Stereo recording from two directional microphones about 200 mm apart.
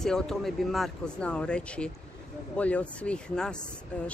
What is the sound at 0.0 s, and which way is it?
Speech, centre (ahead or behind).